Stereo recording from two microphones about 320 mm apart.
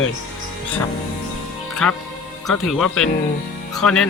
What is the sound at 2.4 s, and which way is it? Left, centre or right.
Speech, centre.